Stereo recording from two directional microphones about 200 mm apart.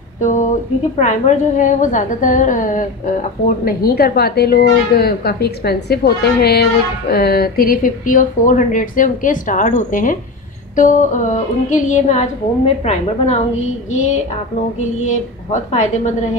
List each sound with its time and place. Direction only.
0.2 s a sound: 40° left (ahead or behind)
0.9 s a woman's voice: 35° left (ahead or behind)
15.0 s a woman's voice: 35° left (ahead or behind)